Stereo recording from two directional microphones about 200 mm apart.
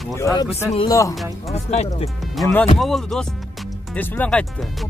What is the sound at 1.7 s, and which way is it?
Speech, 30° left (ahead or behind).